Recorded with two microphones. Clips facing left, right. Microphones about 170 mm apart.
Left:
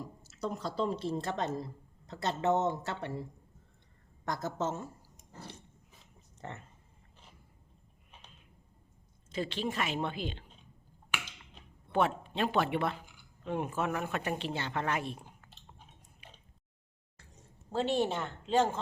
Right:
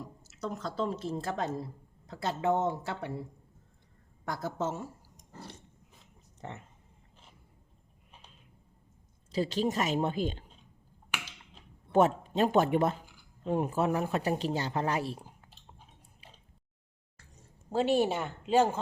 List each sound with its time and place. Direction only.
0.3 s a woman's voice: centre (ahead or behind)
4.3 s speech: 10° right (ahead or behind)
5.1 s a sound: centre (ahead or behind)
6.4 s speech: 15° right (ahead or behind)
9.3 s speech: 35° right (ahead or behind)
11.5 s speech: 40° right (ahead or behind)
16.2 s a sound: 30° right (ahead or behind)
17.7 s speech: 10° right (ahead or behind)